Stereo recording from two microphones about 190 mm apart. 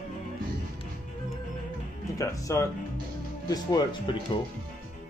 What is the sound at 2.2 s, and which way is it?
Speech, 15° left (ahead or behind).